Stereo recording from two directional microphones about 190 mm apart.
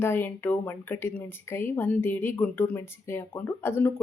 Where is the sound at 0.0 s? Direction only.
10° left (ahead or behind).